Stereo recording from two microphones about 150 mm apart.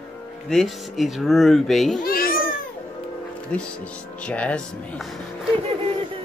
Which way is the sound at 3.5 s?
10° left (ahead or behind).